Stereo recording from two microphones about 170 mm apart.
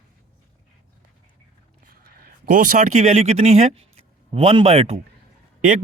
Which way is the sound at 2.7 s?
45° right (ahead or behind).